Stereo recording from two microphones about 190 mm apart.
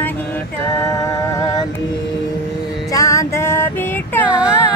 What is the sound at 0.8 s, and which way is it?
Music, 15° left (ahead or behind).